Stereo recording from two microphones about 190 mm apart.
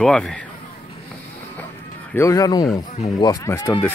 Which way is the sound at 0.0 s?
5° left (ahead or behind).